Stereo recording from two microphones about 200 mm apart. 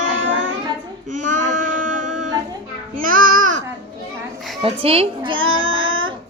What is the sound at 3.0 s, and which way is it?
Babbling, 45° right (ahead or behind).